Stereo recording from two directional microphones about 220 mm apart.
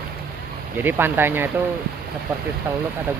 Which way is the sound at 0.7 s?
10° right (ahead or behind).